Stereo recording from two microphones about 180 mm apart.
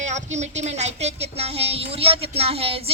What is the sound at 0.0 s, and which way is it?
A woman's voice, 40° right (ahead or behind).